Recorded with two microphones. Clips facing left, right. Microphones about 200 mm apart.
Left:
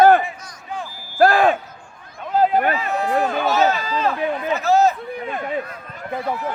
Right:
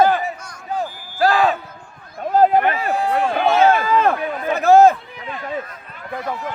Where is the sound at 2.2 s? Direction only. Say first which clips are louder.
Right 3 dB; 45° right (ahead or behind).